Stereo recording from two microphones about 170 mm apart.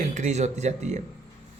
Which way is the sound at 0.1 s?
45° right (ahead or behind).